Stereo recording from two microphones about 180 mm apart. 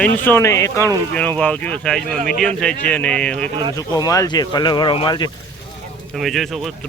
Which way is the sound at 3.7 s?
20° left (ahead or behind).